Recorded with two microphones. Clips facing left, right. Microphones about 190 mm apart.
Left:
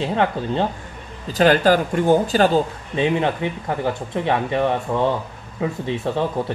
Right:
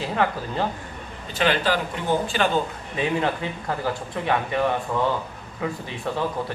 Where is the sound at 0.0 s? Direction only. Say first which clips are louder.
Left 4 dB; 25° left (ahead or behind).